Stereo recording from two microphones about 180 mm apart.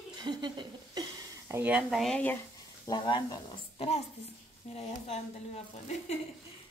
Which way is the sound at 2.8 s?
20° left (ahead or behind).